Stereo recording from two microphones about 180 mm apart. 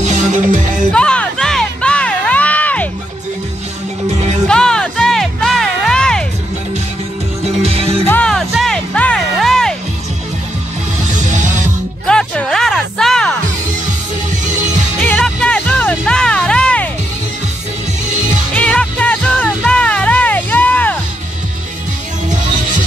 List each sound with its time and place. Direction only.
0.0 s music: 40° right (ahead or behind)
0.9 s music: 5° left (ahead or behind)
4.5 s music: 5° left (ahead or behind)
7.4 s music: 35° right (ahead or behind)
8.1 s music: 5° left (ahead or behind)
11.1 s music: 45° right (ahead or behind)
12.1 s a sound: 5° left (ahead or behind)
14.4 s music: 45° right (ahead or behind)
15.0 s music: 5° left (ahead or behind)
18.5 s music: 5° left (ahead or behind)